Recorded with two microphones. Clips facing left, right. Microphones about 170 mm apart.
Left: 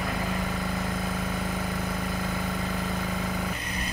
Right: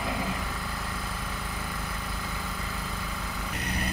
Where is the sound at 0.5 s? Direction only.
45° left (ahead or behind).